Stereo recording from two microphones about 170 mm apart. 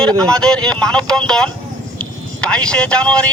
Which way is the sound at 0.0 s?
5° left (ahead or behind).